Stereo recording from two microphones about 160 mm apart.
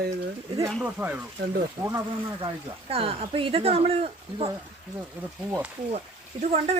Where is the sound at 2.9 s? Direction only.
35° right (ahead or behind).